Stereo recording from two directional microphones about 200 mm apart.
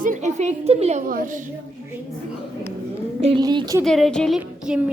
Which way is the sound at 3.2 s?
25° right (ahead or behind).